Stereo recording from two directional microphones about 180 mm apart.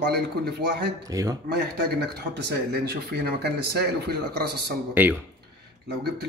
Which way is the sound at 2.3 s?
65° right (ahead or behind).